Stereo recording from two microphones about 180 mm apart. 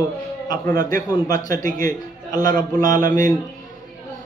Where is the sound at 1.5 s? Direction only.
50° right (ahead or behind).